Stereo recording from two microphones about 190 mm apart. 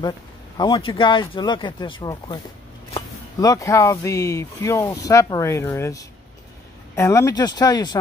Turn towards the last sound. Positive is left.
turn(degrees=20)  # may be behind; listen again after turning